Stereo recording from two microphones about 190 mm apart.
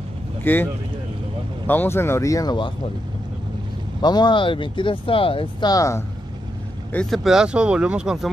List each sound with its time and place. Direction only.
0.4 s speech: 10° left (ahead or behind)
1.7 s speech: 10° left (ahead or behind)
4.0 s speech: 20° left (ahead or behind)
6.9 s speech: 5° left (ahead or behind)